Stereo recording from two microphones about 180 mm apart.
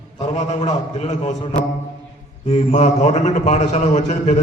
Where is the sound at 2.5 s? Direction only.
40° left (ahead or behind).